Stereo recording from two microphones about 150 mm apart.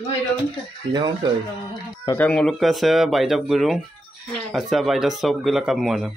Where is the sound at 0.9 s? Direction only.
30° right (ahead or behind).